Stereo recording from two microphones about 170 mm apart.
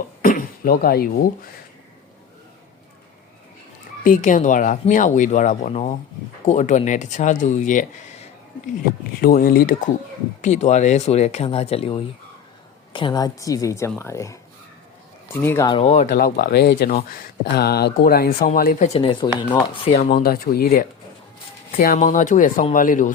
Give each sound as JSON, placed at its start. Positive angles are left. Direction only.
{"t": 0.2, "sound": "cough", "side_deg": 55}
{"t": 4.0, "sound": "speech", "side_deg": 50}
{"t": 9.2, "sound": "speech", "side_deg": 60}
{"t": 10.4, "sound": "a woman's voice", "side_deg": 45}
{"t": 15.4, "sound": "speech", "side_deg": 15}
{"t": 15.7, "sound": "speech", "side_deg": 40}
{"t": 18.9, "sound": "speech", "side_deg": 30}
{"t": 20.1, "sound": "speech", "side_deg": 60}
{"t": 21.9, "sound": "speech", "side_deg": 45}